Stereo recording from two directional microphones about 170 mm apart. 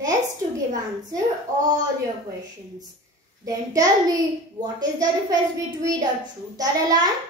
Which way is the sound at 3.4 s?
20° right (ahead or behind).